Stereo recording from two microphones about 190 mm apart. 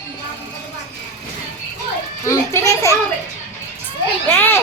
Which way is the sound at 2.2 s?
15° left (ahead or behind).